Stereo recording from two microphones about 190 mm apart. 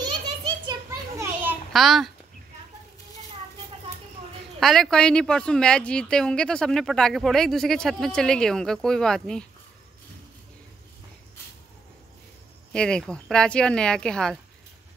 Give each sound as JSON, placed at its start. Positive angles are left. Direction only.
{"t": 0.0, "sound": "a sound", "side_deg": -25}
{"t": 1.7, "sound": "a child's voice", "side_deg": 0}
{"t": 4.6, "sound": "speech", "side_deg": 0}
{"t": 12.7, "sound": "speech", "side_deg": 5}